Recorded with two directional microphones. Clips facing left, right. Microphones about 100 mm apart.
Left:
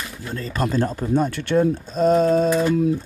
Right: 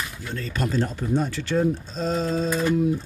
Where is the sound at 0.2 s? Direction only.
40° left (ahead or behind).